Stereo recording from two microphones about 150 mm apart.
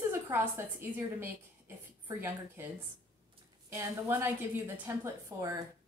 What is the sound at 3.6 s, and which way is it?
A woman's voice, 20° right (ahead or behind).